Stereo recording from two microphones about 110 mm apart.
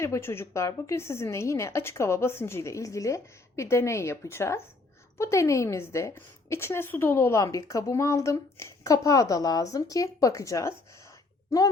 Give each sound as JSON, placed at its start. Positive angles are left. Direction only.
{"t": 0.0, "sound": "a woman's voice", "side_deg": 25}